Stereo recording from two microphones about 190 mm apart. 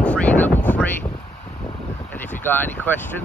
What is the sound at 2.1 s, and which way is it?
Speech, 10° left (ahead or behind).